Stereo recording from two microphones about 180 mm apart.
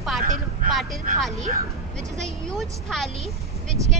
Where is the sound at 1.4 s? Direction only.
40° right (ahead or behind).